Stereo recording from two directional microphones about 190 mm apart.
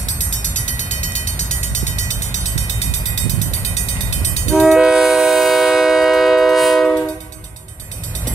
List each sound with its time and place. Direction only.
0.2 s vehicle: 40° left (ahead or behind)
4.6 s train: 5° right (ahead or behind)